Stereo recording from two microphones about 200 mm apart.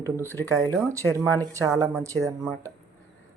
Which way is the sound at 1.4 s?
15° right (ahead or behind).